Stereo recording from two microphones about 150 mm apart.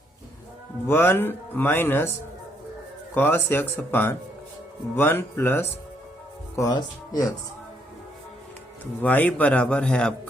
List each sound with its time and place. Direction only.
0.9 s speech: 15° left (ahead or behind)
3.2 s speech: 15° left (ahead or behind)
6.6 s speech: 25° left (ahead or behind)
8.8 s speech: 10° left (ahead or behind)